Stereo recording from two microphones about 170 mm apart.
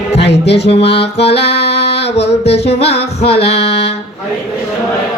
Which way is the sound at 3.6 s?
80° left.